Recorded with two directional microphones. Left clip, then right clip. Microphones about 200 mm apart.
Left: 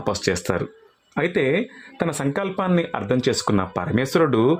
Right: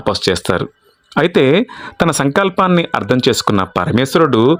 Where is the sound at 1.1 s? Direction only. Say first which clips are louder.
Right 9 dB; 35° right (ahead or behind).